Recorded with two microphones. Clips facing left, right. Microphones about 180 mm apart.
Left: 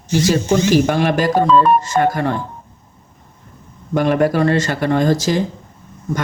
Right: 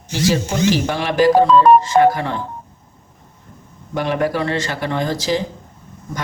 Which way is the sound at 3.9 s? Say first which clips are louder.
Left 4 dB; 50° left (ahead or behind).